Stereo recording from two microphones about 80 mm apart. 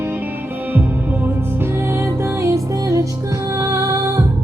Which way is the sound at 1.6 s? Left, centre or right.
Right.